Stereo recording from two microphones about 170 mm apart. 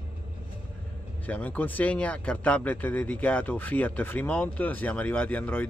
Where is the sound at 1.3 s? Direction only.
10° left (ahead or behind).